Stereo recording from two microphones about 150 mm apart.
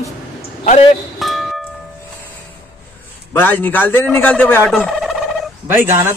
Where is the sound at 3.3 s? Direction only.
15° left (ahead or behind).